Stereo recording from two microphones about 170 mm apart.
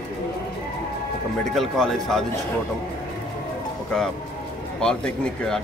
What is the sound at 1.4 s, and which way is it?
Speech, centre (ahead or behind).